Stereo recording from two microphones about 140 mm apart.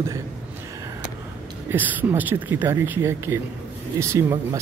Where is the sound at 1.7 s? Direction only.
15° right (ahead or behind).